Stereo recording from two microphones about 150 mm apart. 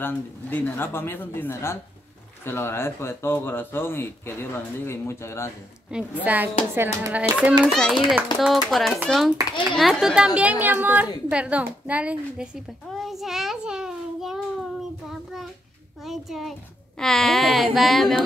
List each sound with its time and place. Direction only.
0.0 s speech: 15° left (ahead or behind)
5.9 s speech: 10° right (ahead or behind)
7.6 s a child's voice: 5° left (ahead or behind)
11.2 s a sound: 10° right (ahead or behind)
16.1 s a sound: centre (ahead or behind)
17.0 s a child's voice: centre (ahead or behind)